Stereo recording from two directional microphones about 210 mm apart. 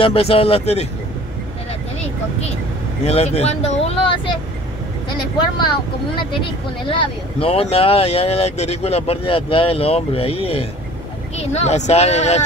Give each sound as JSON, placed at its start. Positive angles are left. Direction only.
{"t": 0.0, "sound": "speech", "side_deg": 25}
{"t": 3.1, "sound": "speech", "side_deg": 30}
{"t": 5.6, "sound": "speech", "side_deg": 25}